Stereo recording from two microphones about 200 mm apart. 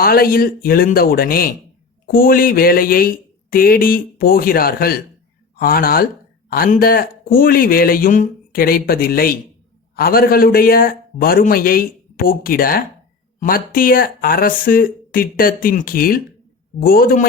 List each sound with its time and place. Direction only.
0.0 s speech: 50° left (ahead or behind)